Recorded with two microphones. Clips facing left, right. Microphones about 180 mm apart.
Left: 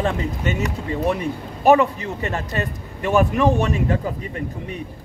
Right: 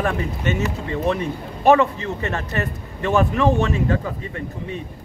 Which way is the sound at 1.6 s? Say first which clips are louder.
Even; 15° left (ahead or behind).